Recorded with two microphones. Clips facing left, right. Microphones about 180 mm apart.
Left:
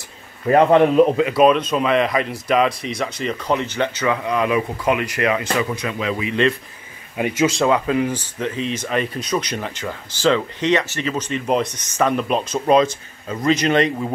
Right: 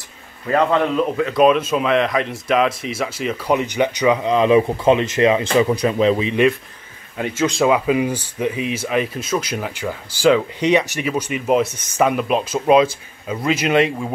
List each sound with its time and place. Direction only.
0.5 s a man's voice: 25° left (ahead or behind)
1.3 s speech: centre (ahead or behind); by 6.4 s 25° right (ahead or behind)
7.2 s speech: 10° left (ahead or behind)
7.5 s speech: 10° right (ahead or behind)